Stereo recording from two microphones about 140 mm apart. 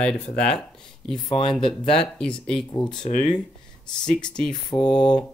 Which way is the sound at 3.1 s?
60° left (ahead or behind).